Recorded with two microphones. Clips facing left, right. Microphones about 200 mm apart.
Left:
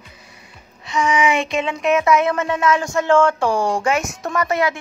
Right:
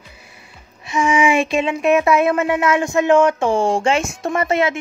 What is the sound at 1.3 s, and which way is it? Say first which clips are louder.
Child singing: right 3 dB; 20° left (ahead or behind).